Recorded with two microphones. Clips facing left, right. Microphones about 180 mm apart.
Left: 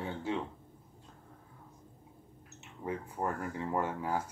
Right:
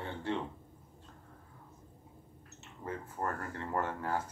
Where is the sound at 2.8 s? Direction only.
10° left (ahead or behind).